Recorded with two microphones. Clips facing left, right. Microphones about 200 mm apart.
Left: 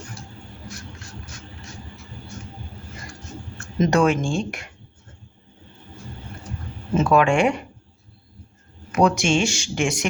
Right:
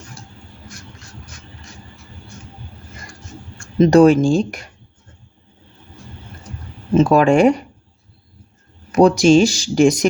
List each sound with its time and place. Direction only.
3.8 s speech: 35° right (ahead or behind)
6.9 s speech: 35° right (ahead or behind)
8.9 s speech: 35° right (ahead or behind)